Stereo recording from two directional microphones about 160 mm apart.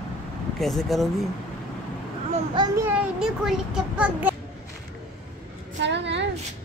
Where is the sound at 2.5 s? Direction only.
25° right (ahead or behind).